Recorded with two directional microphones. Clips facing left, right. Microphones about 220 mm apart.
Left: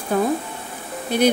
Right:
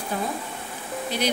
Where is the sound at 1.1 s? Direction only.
55° left (ahead or behind).